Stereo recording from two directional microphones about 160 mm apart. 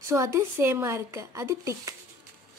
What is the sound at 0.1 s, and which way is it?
A woman's voice, 20° right (ahead or behind).